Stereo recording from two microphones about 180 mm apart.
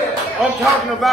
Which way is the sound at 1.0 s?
Centre (ahead or behind).